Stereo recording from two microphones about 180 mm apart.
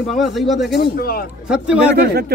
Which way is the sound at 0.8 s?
55° left (ahead or behind).